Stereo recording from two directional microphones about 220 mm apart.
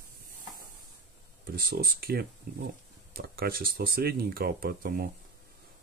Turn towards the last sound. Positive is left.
turn(degrees=-40)  # may be behind; listen again after turning